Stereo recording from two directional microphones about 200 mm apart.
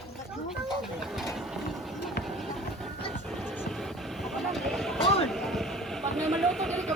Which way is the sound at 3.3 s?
Centre (ahead or behind).